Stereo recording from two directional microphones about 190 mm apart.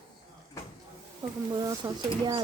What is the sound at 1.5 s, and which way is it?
Speech, 20° right (ahead or behind).